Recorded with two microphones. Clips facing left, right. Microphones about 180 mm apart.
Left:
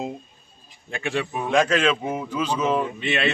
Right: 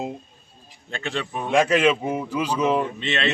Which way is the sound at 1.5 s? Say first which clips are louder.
Right 2 dB; 5° right (ahead or behind).